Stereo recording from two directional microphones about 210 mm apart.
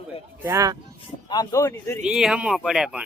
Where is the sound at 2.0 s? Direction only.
5° right (ahead or behind).